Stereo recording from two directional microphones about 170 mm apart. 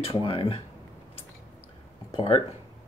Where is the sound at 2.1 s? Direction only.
30° left (ahead or behind).